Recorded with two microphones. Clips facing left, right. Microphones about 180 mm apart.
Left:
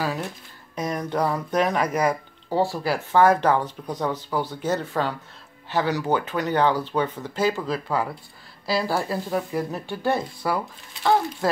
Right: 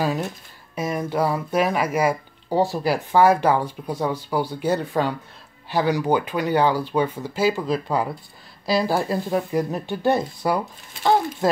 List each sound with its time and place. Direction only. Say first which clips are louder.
0.0 s speech: right 4 dB; 20° right (ahead or behind)
0.7 s speech: right 2 dB; 5° right (ahead or behind)